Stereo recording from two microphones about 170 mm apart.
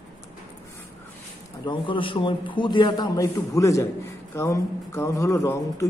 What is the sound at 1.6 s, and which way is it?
Speech, 30° left (ahead or behind).